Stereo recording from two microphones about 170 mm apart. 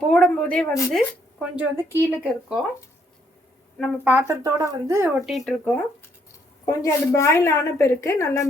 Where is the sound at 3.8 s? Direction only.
10° right (ahead or behind).